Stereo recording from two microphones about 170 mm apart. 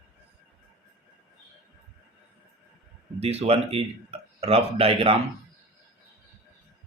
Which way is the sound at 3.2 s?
35° right (ahead or behind).